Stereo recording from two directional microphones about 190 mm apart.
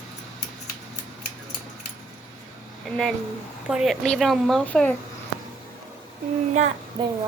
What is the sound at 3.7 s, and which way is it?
A woman's voice, centre (ahead or behind).